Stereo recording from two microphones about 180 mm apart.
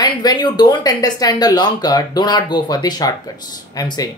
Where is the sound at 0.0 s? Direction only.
20° left (ahead or behind).